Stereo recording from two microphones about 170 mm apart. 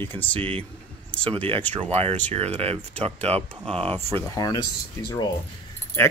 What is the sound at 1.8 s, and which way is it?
Speech, 40° right (ahead or behind).